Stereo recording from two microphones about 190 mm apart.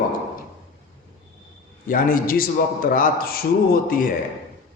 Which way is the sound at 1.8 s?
45° left (ahead or behind).